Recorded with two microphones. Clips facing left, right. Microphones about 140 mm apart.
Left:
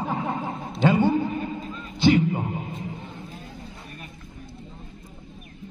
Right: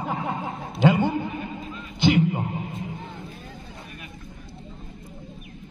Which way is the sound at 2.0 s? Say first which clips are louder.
Left 1 dB; 15° right (ahead or behind).